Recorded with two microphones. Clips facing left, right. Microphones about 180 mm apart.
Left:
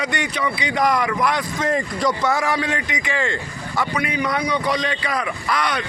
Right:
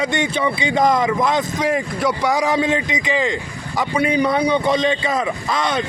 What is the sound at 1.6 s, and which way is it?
Speech, 10° right (ahead or behind).